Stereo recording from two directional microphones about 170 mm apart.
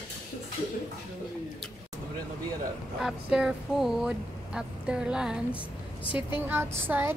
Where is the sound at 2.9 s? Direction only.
5° right (ahead or behind).